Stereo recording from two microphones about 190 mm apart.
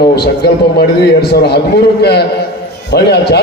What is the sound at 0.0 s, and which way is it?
A man's voice, 60° left (ahead or behind).